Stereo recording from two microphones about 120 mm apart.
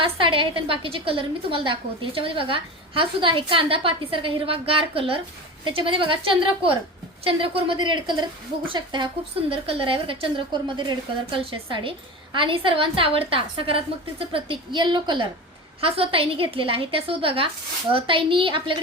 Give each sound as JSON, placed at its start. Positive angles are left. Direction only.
{"t": 0.0, "sound": "a woman's voice", "side_deg": -45}
{"t": 15.8, "sound": "a woman's voice", "side_deg": -50}